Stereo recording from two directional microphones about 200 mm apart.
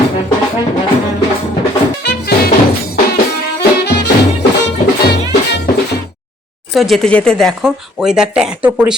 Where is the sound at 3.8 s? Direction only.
55° left (ahead or behind).